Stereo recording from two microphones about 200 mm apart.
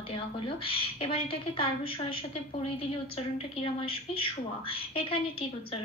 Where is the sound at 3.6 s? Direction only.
25° left (ahead or behind).